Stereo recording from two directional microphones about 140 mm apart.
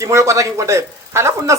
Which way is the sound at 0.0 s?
20° right (ahead or behind).